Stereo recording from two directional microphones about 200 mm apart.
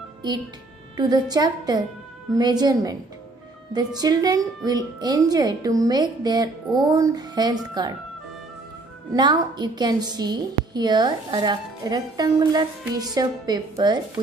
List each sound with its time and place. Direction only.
0.9 s a woman's voice: 20° right (ahead or behind)
9.1 s a woman's voice: 20° right (ahead or behind)